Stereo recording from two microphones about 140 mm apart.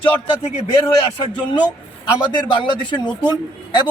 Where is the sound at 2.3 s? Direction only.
35° left (ahead or behind).